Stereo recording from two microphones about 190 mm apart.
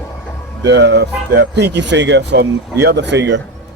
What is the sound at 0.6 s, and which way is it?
Speech, 65° right (ahead or behind).